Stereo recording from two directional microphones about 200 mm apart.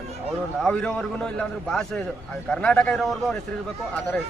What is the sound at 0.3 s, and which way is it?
A man's voice, 5° left (ahead or behind).